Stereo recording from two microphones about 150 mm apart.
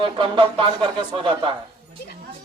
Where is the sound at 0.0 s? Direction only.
35° right (ahead or behind).